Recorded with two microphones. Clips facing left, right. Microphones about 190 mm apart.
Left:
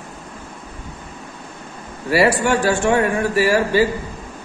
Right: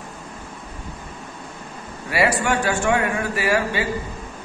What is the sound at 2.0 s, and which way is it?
A man's voice, 35° left (ahead or behind).